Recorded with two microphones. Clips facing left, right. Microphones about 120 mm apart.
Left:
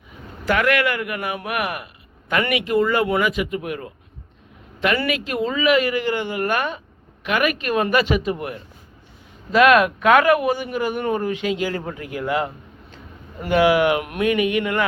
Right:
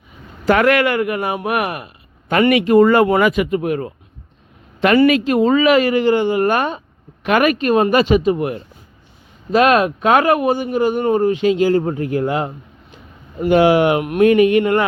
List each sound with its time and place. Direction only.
0.4 s speech: 30° right (ahead or behind); by 3.6 s 50° right (ahead or behind)
3.6 s speech: 35° right (ahead or behind)
4.9 s speech: 30° right (ahead or behind)
5.5 s speech: 40° right (ahead or behind); by 14.2 s 25° right (ahead or behind)
14.2 s speech: 40° right (ahead or behind)